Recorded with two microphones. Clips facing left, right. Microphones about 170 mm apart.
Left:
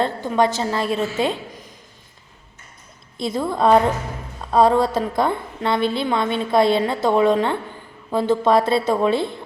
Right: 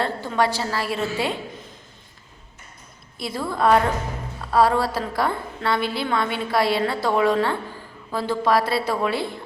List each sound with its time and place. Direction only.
0.0 s a woman's voice: 20° left (ahead or behind)
3.2 s a woman's voice: 25° left (ahead or behind)